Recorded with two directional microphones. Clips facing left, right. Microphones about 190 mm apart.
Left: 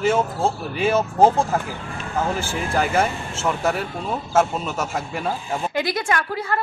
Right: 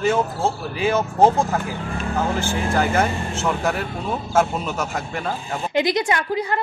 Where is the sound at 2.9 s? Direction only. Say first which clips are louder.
Right 1 dB; 5° left (ahead or behind).